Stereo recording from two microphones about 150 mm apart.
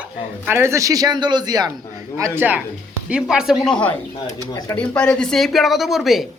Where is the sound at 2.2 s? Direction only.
10° right (ahead or behind).